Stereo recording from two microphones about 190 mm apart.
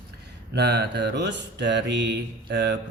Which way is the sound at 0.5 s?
60° right (ahead or behind).